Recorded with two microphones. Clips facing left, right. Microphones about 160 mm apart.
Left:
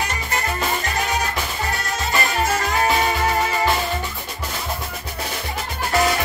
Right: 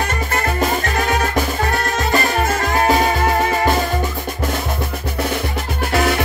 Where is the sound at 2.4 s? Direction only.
40° right (ahead or behind).